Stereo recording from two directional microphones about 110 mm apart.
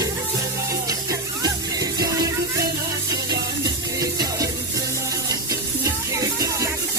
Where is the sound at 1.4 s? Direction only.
35° right (ahead or behind).